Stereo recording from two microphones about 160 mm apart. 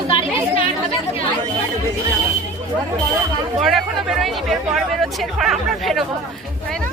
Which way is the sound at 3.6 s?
Centre (ahead or behind).